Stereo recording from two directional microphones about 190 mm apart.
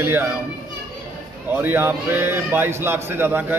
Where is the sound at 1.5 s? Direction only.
10° right (ahead or behind).